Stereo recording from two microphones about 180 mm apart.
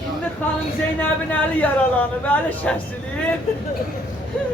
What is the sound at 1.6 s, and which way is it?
Speech, 10° left (ahead or behind).